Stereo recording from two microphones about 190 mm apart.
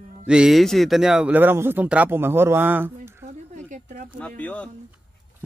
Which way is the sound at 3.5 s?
40° right (ahead or behind).